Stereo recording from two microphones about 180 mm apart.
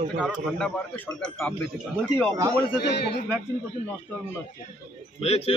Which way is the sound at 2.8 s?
70° left (ahead or behind).